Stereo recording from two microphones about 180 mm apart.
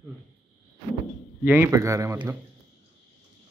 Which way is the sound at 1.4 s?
10° right (ahead or behind).